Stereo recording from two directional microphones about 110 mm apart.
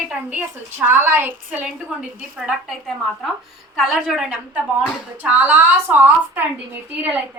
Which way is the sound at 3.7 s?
Centre (ahead or behind).